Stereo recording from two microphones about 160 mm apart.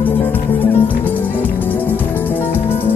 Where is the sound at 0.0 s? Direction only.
10° left (ahead or behind).